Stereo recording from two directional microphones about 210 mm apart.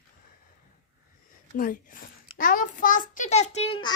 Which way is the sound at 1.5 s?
40° left (ahead or behind).